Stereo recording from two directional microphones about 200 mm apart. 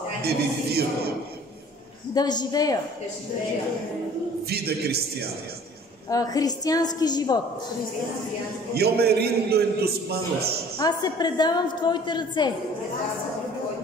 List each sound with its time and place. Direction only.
0.2 s a man's voice: 50° right (ahead or behind)
2.1 s a woman's voice: 20° left (ahead or behind)
4.5 s a man's voice: 50° right (ahead or behind)
6.0 s a woman's voice: 15° left (ahead or behind)
8.7 s a man's voice: 50° right (ahead or behind)
10.8 s a woman's voice: 20° left (ahead or behind)